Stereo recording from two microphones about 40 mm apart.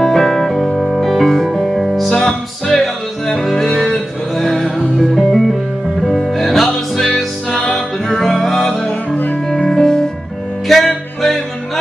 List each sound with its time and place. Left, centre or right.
0.0 s music: centre
8.8 s music: left
9.7 s music: centre